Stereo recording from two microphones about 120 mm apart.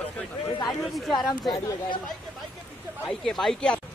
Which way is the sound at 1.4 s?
30° left (ahead or behind).